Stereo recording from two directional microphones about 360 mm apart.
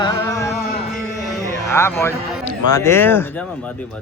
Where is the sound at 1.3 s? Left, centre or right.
Centre.